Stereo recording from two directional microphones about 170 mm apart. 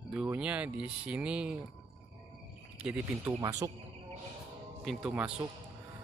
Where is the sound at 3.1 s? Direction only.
15° right (ahead or behind).